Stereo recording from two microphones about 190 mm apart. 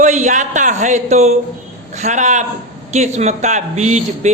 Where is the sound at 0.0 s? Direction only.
40° right (ahead or behind).